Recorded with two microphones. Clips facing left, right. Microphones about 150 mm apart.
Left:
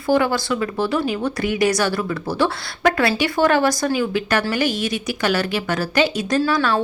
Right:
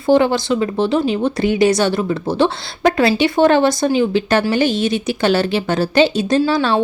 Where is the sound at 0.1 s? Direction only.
25° right (ahead or behind).